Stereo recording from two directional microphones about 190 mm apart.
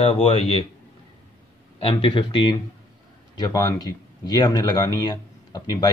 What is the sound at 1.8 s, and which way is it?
Speech, 30° left (ahead or behind).